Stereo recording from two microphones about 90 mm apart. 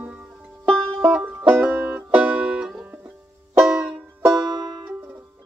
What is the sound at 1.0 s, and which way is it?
Music, 15° right (ahead or behind).